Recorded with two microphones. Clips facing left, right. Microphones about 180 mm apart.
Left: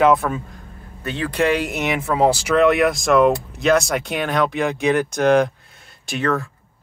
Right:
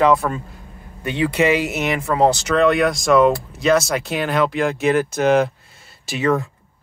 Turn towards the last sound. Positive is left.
turn(degrees=-5)  # may be behind; listen again after turning